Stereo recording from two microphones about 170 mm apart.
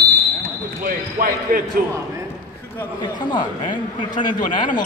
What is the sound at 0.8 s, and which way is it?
Basketball bounce, 60° right (ahead or behind).